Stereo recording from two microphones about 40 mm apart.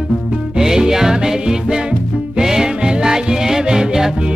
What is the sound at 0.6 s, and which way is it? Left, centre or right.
Music, centre.